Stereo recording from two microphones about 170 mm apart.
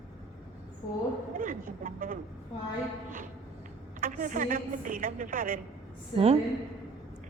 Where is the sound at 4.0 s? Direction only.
50° right (ahead or behind).